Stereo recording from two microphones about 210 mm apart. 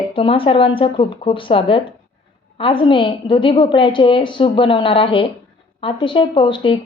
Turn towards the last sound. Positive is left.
turn(degrees=25)  # may be behind; listen again after turning